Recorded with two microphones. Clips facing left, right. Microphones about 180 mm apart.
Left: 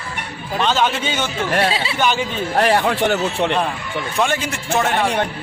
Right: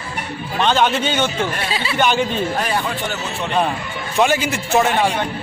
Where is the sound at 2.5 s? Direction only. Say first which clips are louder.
Left 5 dB; 70° left (ahead or behind).